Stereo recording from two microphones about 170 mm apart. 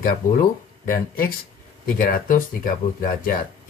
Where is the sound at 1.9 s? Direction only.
55° left (ahead or behind).